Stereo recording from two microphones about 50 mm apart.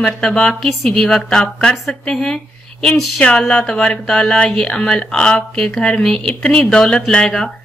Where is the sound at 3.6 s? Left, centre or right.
Centre.